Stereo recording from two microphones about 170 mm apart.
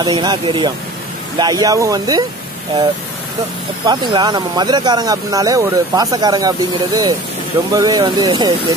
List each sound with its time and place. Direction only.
0.0 s speech: 25° right (ahead or behind)
3.8 s speech: 25° right (ahead or behind)